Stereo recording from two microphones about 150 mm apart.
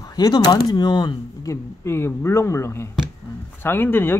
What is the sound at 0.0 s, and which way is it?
Speech, 25° left (ahead or behind).